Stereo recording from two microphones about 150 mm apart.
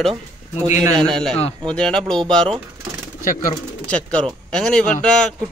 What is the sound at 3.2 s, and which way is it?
Speech, 65° left (ahead or behind).